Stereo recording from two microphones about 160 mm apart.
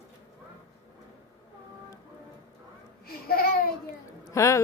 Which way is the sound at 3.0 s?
70° left (ahead or behind).